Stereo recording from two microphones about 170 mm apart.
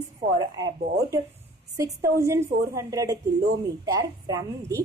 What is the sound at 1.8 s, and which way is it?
A woman's voice, 20° right (ahead or behind).